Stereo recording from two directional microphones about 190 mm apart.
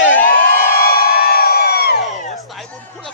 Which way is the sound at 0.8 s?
55° left (ahead or behind).